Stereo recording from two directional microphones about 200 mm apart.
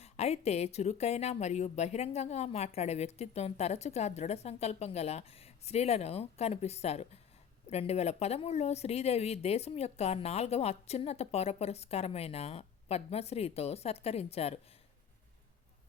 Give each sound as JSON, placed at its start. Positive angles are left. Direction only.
{"t": 0.0, "sound": "a woman's voice", "side_deg": 30}